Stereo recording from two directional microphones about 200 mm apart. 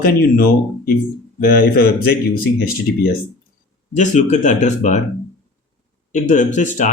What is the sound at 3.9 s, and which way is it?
Speech, 40° left (ahead or behind).